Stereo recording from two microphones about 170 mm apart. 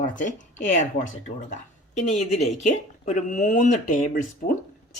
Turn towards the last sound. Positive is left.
turn(degrees=50)  # may be behind; listen again after turning